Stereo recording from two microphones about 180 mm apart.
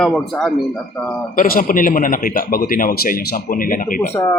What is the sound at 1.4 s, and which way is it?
A man's voice, 50° left (ahead or behind).